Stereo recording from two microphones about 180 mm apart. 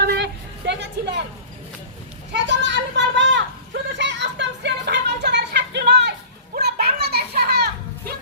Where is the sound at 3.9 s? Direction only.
80° right.